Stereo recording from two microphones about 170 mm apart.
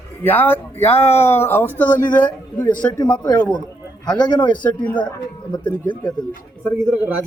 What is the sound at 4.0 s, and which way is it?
Speech, 25° left (ahead or behind).